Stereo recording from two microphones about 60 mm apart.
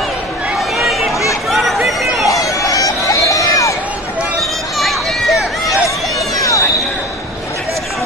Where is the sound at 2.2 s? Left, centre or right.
Left.